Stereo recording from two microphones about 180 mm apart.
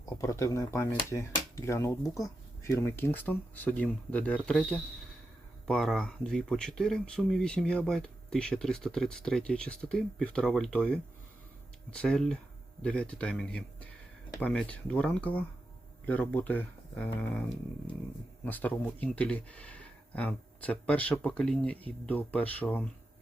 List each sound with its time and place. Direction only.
0.0 s speech: 15° left (ahead or behind)
18.4 s speech: 10° left (ahead or behind)